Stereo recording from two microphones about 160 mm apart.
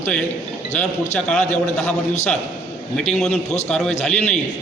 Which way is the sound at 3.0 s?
5° left (ahead or behind).